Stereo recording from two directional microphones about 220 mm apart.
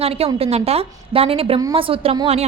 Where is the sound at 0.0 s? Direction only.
25° right (ahead or behind).